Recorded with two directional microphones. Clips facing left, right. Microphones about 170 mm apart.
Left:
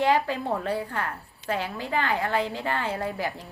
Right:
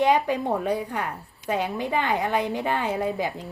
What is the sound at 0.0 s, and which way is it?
Speech, 15° right (ahead or behind).